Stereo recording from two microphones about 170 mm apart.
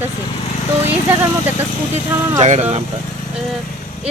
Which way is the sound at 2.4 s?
40° right (ahead or behind).